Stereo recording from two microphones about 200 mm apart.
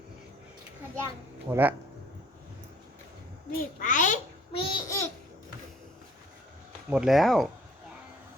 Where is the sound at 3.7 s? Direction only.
40° left (ahead or behind); by 5.1 s 15° left (ahead or behind).